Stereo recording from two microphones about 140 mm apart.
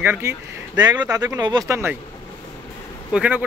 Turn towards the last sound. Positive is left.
turn(degrees=-10)  # may be behind; listen again after turning